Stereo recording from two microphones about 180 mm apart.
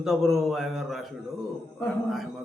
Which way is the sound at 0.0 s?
Centre (ahead or behind).